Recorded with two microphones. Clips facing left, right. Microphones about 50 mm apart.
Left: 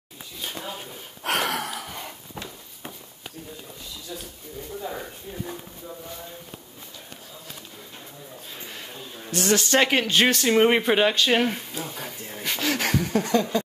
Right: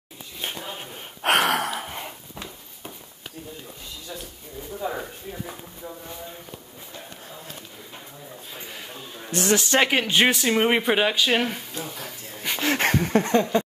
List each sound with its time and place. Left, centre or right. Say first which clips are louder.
0.9 s a sound: right 6 dB; right
1.8 s dog: right 2 dB; right
8.5 s a sound: right 1 dB; centre
9.3 s speech: right 1 dB; centre
9.6 s speech: left 2 dB; centre
12.4 s speech: right 3 dB; right